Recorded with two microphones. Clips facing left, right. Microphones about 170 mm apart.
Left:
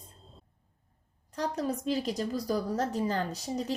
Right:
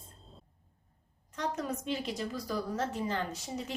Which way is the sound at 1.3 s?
35° left (ahead or behind).